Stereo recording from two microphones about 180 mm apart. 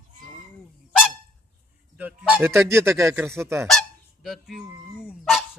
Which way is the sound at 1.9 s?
5° right (ahead or behind).